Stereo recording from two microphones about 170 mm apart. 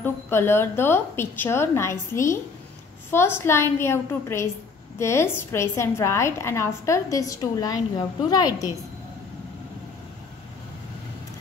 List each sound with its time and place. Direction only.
0.0 s a woman's voice: 15° left (ahead or behind)